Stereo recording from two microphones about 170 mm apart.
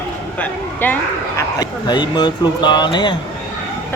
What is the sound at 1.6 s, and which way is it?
Speech, 25° left (ahead or behind).